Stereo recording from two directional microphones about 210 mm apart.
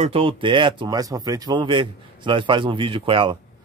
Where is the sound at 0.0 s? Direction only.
25° right (ahead or behind).